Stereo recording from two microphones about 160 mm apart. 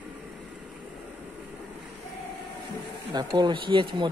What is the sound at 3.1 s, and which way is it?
Speech, 30° right (ahead or behind).